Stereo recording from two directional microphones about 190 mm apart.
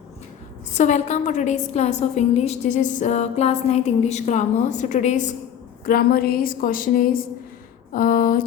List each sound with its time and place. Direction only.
0.7 s a woman's voice: 40° left (ahead or behind)
5.8 s a woman's voice: 50° left (ahead or behind)